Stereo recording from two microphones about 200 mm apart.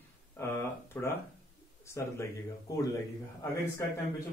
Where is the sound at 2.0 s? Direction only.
15° left (ahead or behind).